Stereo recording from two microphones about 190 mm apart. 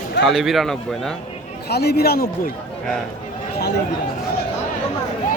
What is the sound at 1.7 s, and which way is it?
Speech, 55° left (ahead or behind).